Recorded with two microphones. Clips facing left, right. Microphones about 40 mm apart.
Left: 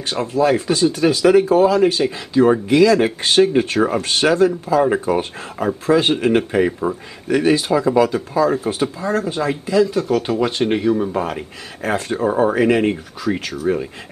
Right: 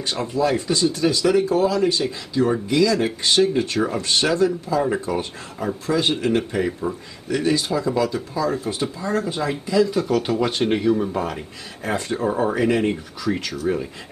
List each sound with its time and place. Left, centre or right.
0.1 s speech: centre
0.4 s speech: left
8.4 s speech: centre
12.5 s speech: left
12.9 s speech: centre